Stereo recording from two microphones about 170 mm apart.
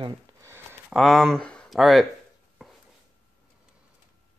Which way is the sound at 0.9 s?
Centre (ahead or behind).